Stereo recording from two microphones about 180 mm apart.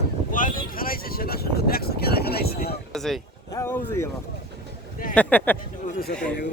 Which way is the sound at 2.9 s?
Centre (ahead or behind).